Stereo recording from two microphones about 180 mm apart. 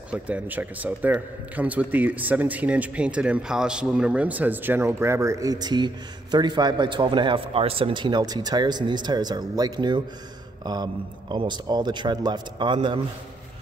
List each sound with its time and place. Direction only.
0.1 s a man's voice: 10° right (ahead or behind); by 13.0 s 30° right (ahead or behind)